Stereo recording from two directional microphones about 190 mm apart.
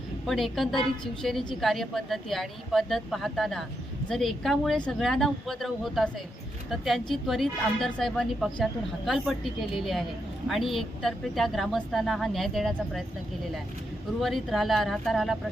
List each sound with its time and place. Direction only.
0.3 s speech: centre (ahead or behind)
14.2 s speech: centre (ahead or behind)